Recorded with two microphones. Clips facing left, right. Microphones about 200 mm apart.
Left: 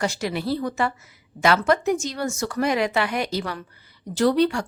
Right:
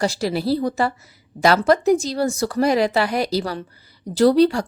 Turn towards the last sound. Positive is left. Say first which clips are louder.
# right 5 dB
turn(degrees=-35)  # may be behind; listen again after turning